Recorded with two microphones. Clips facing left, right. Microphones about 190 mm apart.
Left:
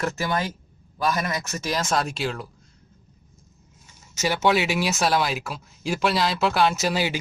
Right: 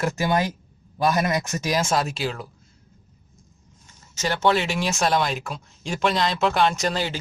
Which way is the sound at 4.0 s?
10° left (ahead or behind).